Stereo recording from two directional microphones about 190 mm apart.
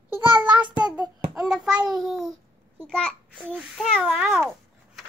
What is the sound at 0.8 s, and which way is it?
Child singing, 20° right (ahead or behind).